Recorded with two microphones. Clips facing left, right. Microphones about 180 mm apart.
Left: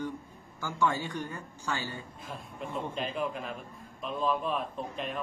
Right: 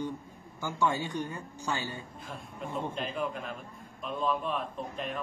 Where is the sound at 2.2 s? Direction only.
Centre (ahead or behind).